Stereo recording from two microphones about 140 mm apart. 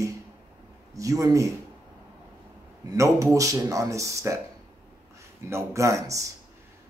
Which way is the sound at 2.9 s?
25° right (ahead or behind).